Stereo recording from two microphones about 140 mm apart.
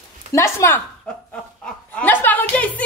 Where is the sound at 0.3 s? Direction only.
20° left (ahead or behind).